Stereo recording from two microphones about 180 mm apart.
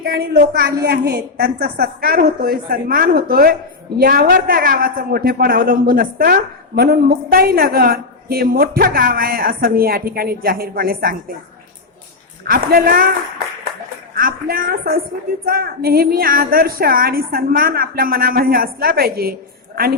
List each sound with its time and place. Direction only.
0.0 s a man's voice: 60° right (ahead or behind)
12.5 s a woman's voice: 55° right (ahead or behind)
14.2 s a man's voice: 55° right (ahead or behind)